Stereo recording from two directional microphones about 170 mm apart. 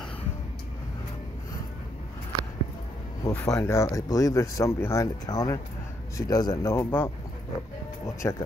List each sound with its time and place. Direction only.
3.3 s speech: 20° left (ahead or behind)